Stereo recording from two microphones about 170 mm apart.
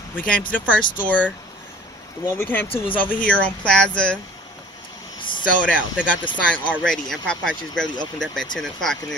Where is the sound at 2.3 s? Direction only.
10° left (ahead or behind).